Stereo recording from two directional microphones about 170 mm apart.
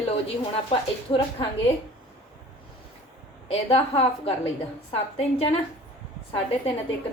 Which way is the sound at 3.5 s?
35° left (ahead or behind).